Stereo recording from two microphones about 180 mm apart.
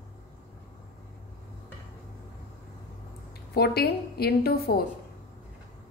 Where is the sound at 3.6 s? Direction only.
60° left (ahead or behind).